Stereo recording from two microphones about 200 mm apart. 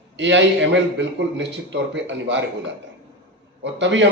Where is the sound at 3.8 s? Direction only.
65° right (ahead or behind).